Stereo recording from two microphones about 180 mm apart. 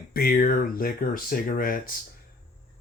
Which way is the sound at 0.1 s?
55° left (ahead or behind).